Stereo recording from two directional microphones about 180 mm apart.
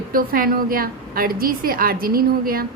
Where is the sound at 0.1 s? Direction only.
55° right (ahead or behind).